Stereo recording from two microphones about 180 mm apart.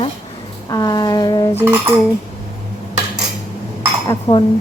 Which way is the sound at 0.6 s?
20° left (ahead or behind).